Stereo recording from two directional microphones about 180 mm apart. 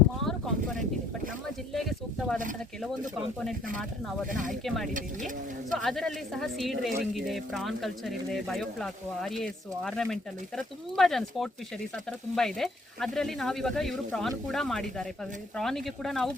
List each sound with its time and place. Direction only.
0.3 s a sound: centre (ahead or behind)
1.7 s speech: centre (ahead or behind)
4.4 s a woman's voice: centre (ahead or behind)